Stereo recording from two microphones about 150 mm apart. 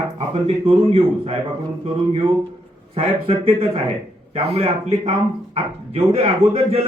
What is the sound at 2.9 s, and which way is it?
A man's voice, 40° right (ahead or behind).